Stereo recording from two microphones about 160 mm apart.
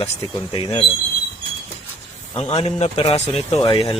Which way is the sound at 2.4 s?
40° left (ahead or behind).